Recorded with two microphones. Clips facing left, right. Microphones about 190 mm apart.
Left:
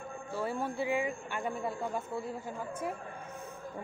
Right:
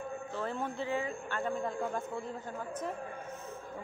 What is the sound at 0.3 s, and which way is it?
Speech, 10° left (ahead or behind).